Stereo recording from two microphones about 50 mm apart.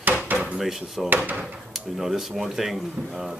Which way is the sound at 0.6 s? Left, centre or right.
Centre.